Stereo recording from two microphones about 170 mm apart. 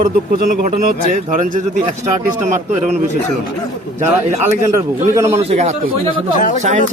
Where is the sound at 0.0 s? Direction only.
55° right (ahead or behind).